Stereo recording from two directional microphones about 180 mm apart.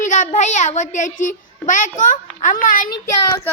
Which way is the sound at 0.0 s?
40° left (ahead or behind).